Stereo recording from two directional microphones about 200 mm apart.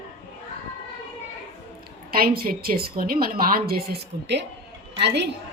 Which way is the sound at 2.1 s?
45° right (ahead or behind).